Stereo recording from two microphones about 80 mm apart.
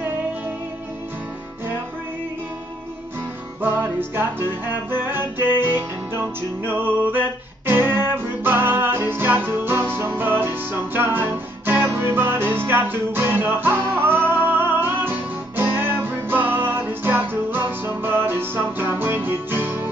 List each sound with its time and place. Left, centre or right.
3.6 s music: right